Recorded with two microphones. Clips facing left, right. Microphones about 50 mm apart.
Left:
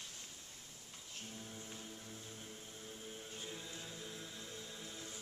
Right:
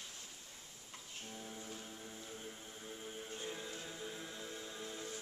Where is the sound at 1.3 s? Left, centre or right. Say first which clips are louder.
Right 4 dB; centre.